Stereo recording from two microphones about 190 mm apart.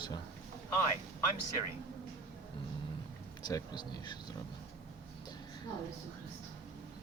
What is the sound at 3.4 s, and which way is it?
Speech, 20° left (ahead or behind).